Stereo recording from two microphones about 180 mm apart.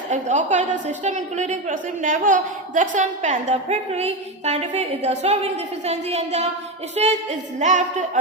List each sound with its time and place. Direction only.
0.1 s a woman's voice: 45° right (ahead or behind)